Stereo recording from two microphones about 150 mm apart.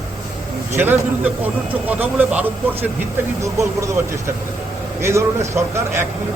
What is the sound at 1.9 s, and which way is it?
Speech, 10° right (ahead or behind).